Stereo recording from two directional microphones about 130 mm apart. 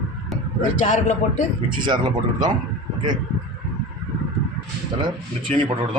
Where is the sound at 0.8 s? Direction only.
70° left (ahead or behind).